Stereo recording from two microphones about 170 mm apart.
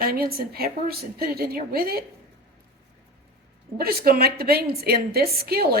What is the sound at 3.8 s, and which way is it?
Speech, 65° right (ahead or behind).